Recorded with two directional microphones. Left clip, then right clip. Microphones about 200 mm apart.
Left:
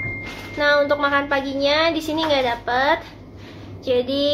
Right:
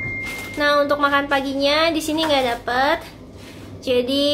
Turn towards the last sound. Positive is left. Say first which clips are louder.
# right 1 dB
turn(degrees=-5)  # may be behind; listen again after turning